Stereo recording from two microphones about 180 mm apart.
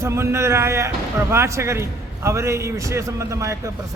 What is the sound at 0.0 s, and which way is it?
A man's voice, 15° right (ahead or behind).